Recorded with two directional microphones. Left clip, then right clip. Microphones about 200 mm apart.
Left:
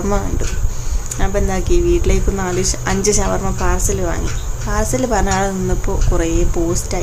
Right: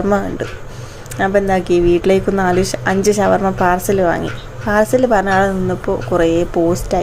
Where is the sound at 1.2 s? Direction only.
15° right (ahead or behind).